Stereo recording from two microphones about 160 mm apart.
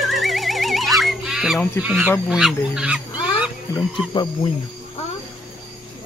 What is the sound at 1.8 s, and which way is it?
Speech, 5° right (ahead or behind).